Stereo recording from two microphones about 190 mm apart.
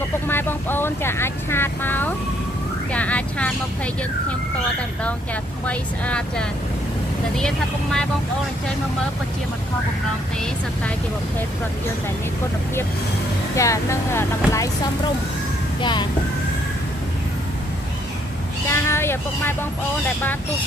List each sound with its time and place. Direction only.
0.3 s speech: 10° left (ahead or behind)
13.6 s speech: 15° left (ahead or behind)
15.8 s a child's voice: 25° left (ahead or behind)
18.7 s vehicle: 15° left (ahead or behind)